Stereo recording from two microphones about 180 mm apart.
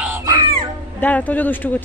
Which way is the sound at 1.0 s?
10° left (ahead or behind).